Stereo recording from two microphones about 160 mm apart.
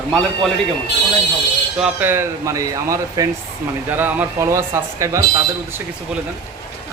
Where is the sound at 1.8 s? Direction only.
10° right (ahead or behind).